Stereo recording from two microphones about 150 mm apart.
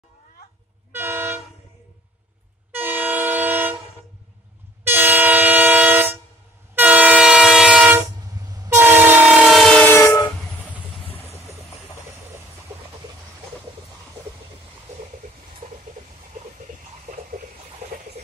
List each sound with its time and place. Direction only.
0.9 s train: 15° right (ahead or behind)
2.7 s train: 15° right (ahead or behind)
4.8 s train: 15° right (ahead or behind)
9.5 s train: centre (ahead or behind)
9.8 s train: 20° left (ahead or behind)
11.1 s vehicle: 40° left (ahead or behind)